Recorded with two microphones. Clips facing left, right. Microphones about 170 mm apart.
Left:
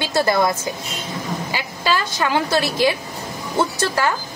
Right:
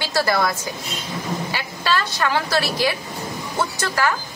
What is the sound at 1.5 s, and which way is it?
A woman's voice, 10° left (ahead or behind).